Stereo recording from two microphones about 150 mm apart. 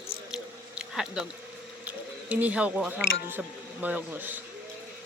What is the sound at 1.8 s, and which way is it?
Speech, 10° right (ahead or behind).